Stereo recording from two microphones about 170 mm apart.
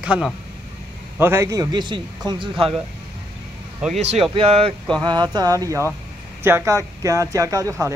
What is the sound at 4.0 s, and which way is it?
A man's voice, 35° right (ahead or behind).